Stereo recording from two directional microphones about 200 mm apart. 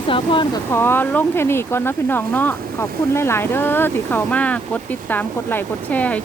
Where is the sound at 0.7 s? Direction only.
10° left (ahead or behind).